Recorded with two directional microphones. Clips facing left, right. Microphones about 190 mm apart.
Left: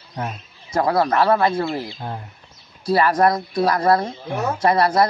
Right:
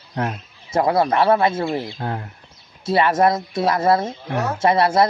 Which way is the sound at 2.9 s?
25° right (ahead or behind).